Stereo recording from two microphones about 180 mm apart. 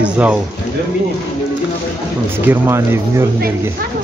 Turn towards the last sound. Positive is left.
turn(degrees=-15)  # may be behind; listen again after turning